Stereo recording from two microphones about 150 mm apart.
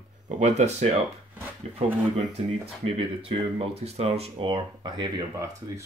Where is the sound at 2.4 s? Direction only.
45° right (ahead or behind); by 5.8 s 20° right (ahead or behind).